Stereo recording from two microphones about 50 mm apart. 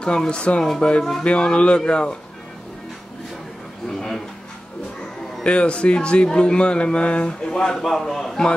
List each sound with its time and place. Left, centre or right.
0.0 s speech: centre
3.9 s a sound: centre
5.4 s speech: left
8.2 s a man's voice: centre